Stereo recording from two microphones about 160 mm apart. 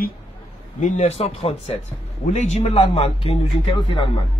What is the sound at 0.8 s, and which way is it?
A man's voice, 45° left (ahead or behind).